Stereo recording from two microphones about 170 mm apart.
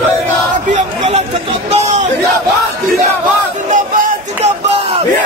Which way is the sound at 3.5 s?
50° right (ahead or behind).